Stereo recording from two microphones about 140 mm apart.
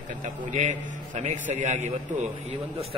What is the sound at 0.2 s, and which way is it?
A man's voice, 55° right (ahead or behind).